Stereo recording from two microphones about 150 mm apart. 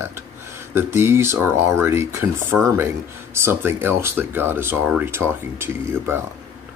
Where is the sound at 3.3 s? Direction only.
15° right (ahead or behind).